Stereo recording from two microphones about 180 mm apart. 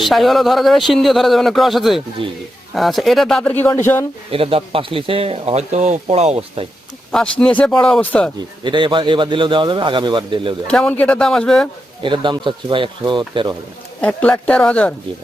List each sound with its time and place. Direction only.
0.0 s speech: centre (ahead or behind)
2.2 s a man's voice: 30° right (ahead or behind)
2.7 s speech: centre (ahead or behind)
4.3 s speech: 30° right (ahead or behind)
7.1 s speech: 5° left (ahead or behind)
8.6 s a man's voice: 25° right (ahead or behind)
10.7 s speech: 5° left (ahead or behind)
12.0 s a man's voice: 25° right (ahead or behind)
14.0 s speech: 5° left (ahead or behind)